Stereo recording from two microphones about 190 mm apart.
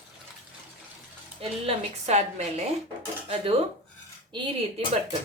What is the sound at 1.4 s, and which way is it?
Speech, 35° right (ahead or behind).